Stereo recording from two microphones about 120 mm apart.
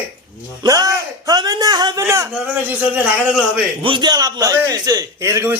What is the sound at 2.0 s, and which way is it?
Speech, 25° right (ahead or behind).